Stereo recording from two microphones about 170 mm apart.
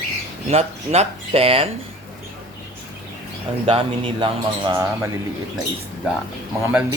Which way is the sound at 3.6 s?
30° right (ahead or behind).